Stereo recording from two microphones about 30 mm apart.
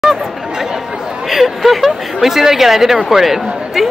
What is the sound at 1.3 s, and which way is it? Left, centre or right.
A woman's voice, centre.